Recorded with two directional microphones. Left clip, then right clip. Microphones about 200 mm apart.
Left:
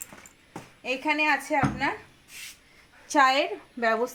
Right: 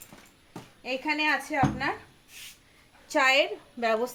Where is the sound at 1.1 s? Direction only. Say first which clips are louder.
Left 2 dB; 35° left (ahead or behind).